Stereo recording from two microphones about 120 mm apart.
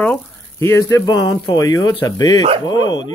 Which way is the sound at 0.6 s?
25° left (ahead or behind).